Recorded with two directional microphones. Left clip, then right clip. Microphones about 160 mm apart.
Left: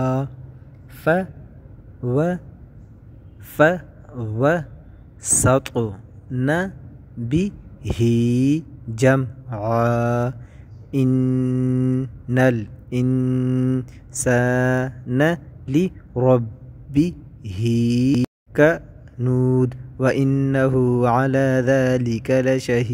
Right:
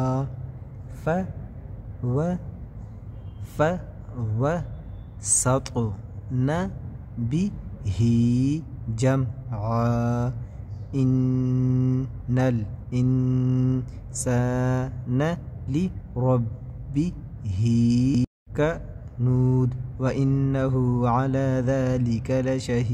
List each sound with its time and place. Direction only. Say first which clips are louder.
0.0 s a sound: left 5 dB; 30° left (ahead or behind)
1.0 s a man's voice: left 7 dB; 30° left (ahead or behind)
2.0 s mantra: left 7 dB; 30° left (ahead or behind)
3.5 s speech: left 8 dB; 30° left (ahead or behind)
5.2 s mantra: left 6 dB; 30° left (ahead or behind)
7.2 s speech: left 7 dB; 30° left (ahead or behind)
10.9 s mantra: left 5 dB; 30° left (ahead or behind)
13.0 s mantra: left 4 dB; 25° left (ahead or behind)
14.1 s speech: left 8 dB; 35° left (ahead or behind)